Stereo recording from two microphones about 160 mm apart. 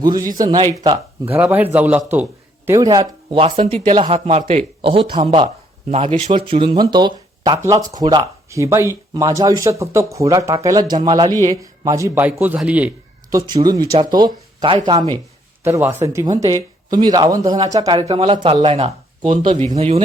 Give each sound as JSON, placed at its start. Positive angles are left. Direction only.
{"t": 0.3, "sound": "speech", "side_deg": -25}
{"t": 2.6, "sound": "speech", "side_deg": -20}
{"t": 13.3, "sound": "speech", "side_deg": -25}
{"t": 15.6, "sound": "speech", "side_deg": -15}